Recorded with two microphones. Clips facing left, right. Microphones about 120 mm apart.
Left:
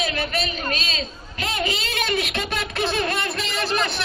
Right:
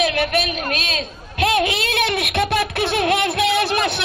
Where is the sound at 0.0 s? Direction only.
70° right (ahead or behind).